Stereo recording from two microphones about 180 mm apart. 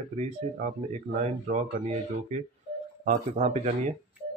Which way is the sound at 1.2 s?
40° right (ahead or behind).